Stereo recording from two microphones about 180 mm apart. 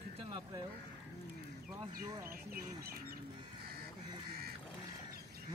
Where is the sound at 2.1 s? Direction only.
15° right (ahead or behind).